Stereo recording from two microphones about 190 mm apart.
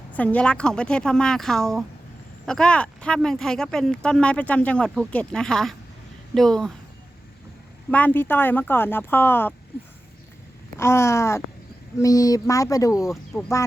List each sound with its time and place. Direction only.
0.1 s speech: 5° left (ahead or behind)
7.9 s speech: 10° left (ahead or behind)
10.8 s speech: 15° left (ahead or behind)
13.3 s speech: centre (ahead or behind)